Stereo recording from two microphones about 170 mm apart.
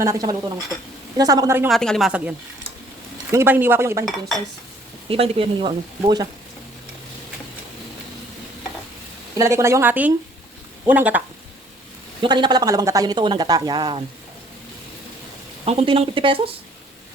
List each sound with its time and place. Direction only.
0.0 s speech: 20° right (ahead or behind)
1.7 s speech: centre (ahead or behind)
3.3 s a woman's voice: 10° right (ahead or behind)
5.0 s speech: 35° right (ahead or behind)
9.3 s a woman's voice: 20° right (ahead or behind)
12.2 s speech: 25° right (ahead or behind)
15.6 s speech: 35° right (ahead or behind)